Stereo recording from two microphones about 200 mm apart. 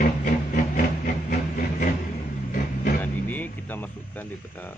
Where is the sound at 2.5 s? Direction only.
45° left (ahead or behind).